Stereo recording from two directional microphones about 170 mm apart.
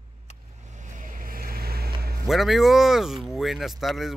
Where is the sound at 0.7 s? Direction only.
50° right (ahead or behind); by 2.1 s 65° right (ahead or behind).